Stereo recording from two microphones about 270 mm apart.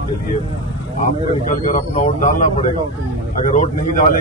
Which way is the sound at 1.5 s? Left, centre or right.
Left.